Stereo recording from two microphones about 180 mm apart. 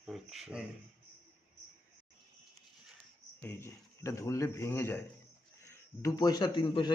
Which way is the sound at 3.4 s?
10° left (ahead or behind).